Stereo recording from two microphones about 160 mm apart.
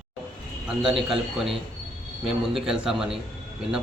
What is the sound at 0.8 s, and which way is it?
A man's voice, centre (ahead or behind).